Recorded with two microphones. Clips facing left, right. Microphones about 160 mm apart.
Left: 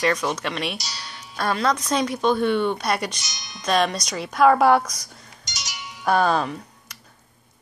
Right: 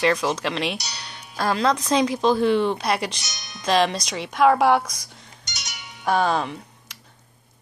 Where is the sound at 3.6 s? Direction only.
30° right (ahead or behind).